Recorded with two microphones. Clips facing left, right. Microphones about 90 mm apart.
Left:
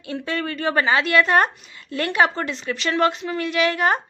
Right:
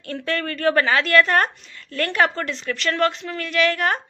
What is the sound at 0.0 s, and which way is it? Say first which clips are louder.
A woman's voice: even; 10° left (ahead or behind).